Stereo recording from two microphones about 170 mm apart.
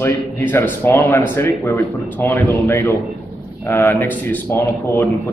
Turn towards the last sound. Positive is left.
turn(degrees=15)  # may be behind; listen again after turning